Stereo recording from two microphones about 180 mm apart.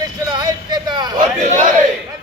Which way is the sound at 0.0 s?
25° right (ahead or behind).